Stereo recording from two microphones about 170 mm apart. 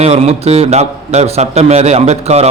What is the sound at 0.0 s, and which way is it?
A man's voice, 40° right (ahead or behind).